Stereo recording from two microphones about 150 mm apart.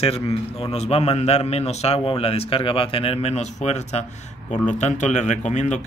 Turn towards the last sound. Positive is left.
turn(degrees=50)  # may be behind; listen again after turning